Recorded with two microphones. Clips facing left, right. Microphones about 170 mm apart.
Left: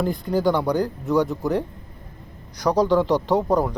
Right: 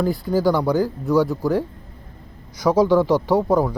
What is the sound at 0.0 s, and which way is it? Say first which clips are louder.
Speech: right 2 dB; 5° right (ahead or behind).